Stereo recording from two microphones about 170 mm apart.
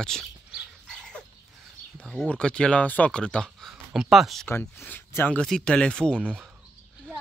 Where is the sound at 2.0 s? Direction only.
5° left (ahead or behind).